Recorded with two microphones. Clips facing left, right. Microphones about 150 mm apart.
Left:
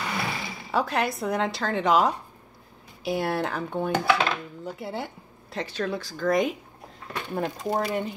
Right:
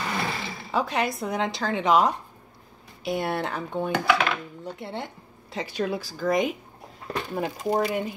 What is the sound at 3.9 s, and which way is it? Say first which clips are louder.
Dishes: even; 30° left (ahead or behind).